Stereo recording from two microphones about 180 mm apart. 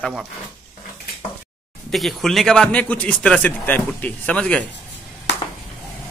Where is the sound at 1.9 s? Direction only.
Centre (ahead or behind).